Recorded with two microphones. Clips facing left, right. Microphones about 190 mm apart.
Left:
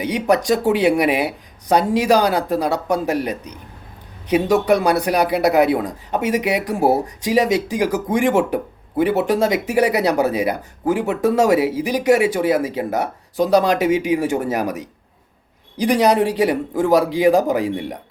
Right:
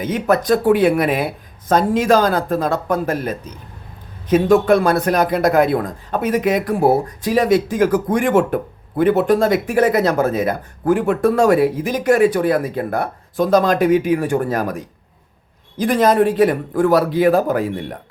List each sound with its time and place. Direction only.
0.0 s speech: 15° left (ahead or behind)
15.8 s speech: 15° left (ahead or behind)